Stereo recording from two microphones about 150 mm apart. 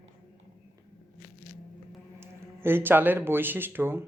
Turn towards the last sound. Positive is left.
turn(degrees=-15)  # may be behind; listen again after turning